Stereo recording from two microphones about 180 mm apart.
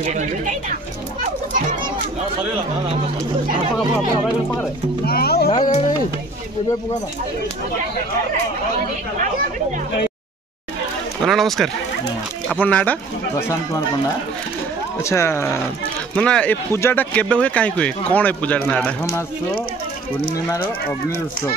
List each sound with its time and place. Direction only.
0.0 s speech: 45° right (ahead or behind)
5.0 s speech: 60° left (ahead or behind)
5.6 s speech: 45° left (ahead or behind)
11.2 s speech: centre (ahead or behind)
15.0 s speech: 15° left (ahead or behind)